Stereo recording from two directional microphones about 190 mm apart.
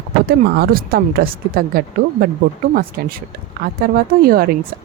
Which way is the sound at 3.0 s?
55° right (ahead or behind).